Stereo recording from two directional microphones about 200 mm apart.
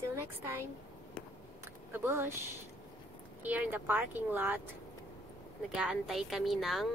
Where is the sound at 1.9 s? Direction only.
10° right (ahead or behind).